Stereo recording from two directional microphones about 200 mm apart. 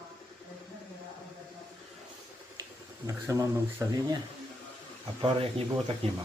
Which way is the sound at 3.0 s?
15° right (ahead or behind).